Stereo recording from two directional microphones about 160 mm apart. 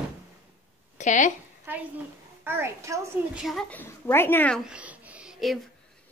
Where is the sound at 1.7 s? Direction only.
10° right (ahead or behind).